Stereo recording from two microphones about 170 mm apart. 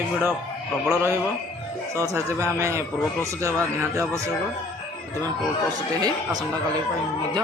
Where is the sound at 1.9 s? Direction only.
15° right (ahead or behind).